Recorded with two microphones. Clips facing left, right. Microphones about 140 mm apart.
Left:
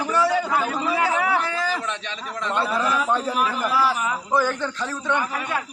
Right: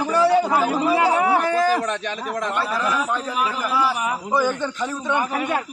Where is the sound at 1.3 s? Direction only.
45° right (ahead or behind).